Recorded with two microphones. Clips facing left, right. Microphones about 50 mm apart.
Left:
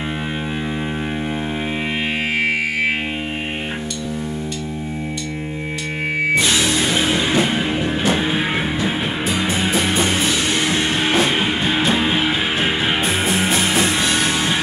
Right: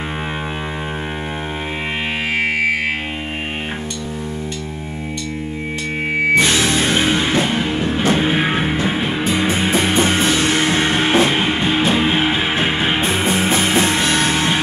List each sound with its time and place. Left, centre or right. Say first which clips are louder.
6.3 s music: right 3 dB; right
7.3 s music: even; centre
8.0 s music: right 5 dB; right